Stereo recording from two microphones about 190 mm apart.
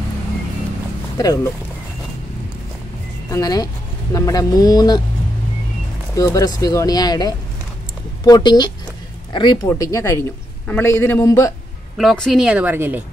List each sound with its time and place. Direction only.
1.1 s speech: 20° left (ahead or behind)
3.3 s speech: 20° left (ahead or behind)
6.1 s a man's voice: 20° left (ahead or behind)
12.0 s speech: centre (ahead or behind)